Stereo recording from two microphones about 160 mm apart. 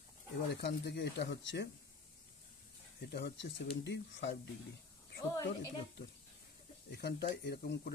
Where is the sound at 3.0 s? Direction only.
90° left.